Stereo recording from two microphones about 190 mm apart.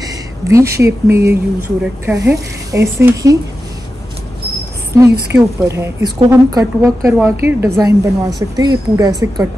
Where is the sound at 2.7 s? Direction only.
15° right (ahead or behind).